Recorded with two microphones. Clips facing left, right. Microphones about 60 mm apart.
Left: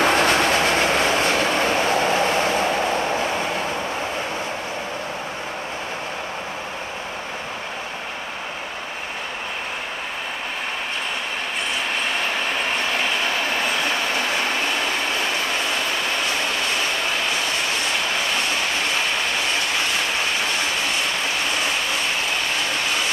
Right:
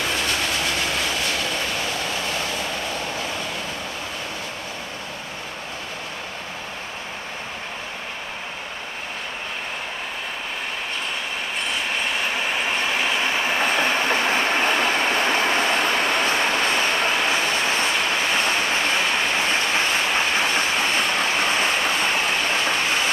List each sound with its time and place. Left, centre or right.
0.0 s train: left